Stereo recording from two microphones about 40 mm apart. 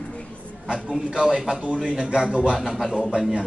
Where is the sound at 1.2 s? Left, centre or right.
Centre.